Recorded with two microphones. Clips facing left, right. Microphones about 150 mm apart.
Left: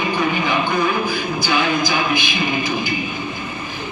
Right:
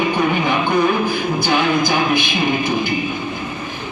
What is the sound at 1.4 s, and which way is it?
Music, 55° right (ahead or behind).